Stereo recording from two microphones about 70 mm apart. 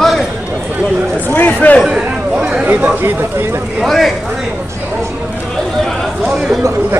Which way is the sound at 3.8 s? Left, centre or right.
Centre.